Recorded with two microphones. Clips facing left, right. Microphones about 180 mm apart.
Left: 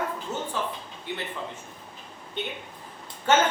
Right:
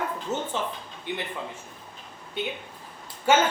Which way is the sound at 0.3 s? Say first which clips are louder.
Right 1 dB; 20° right (ahead or behind).